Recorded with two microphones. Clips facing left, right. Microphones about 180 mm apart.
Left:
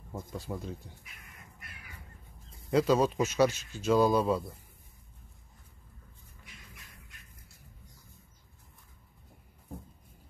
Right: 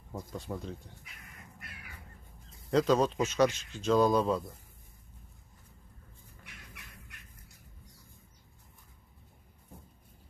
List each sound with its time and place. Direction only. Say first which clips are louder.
0.1 s speech: even; 5° left (ahead or behind)
2.7 s speech: left 1 dB; 5° left (ahead or behind)
6.4 s a sound: right 1 dB; 70° right (ahead or behind)